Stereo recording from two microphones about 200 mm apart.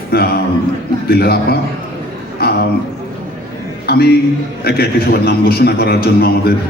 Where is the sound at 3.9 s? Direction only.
50° left (ahead or behind).